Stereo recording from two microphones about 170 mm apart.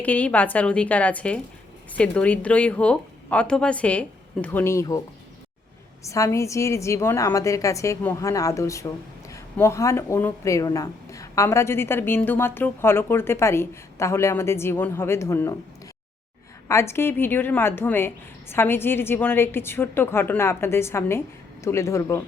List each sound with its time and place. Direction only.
0.0 s speech: 10° left (ahead or behind)
6.0 s speech: 15° left (ahead or behind)
16.6 s speech: 15° left (ahead or behind)